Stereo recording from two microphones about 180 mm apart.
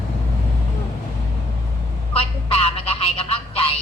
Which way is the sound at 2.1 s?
30° left (ahead or behind).